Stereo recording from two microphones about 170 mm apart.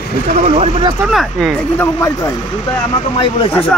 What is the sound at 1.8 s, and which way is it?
Speech, 15° left (ahead or behind).